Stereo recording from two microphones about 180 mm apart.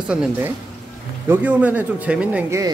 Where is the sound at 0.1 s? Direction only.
5° right (ahead or behind).